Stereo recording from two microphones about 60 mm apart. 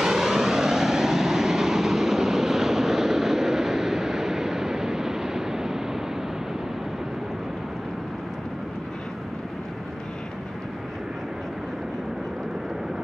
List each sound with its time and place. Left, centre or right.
0.0 s vehicle: centre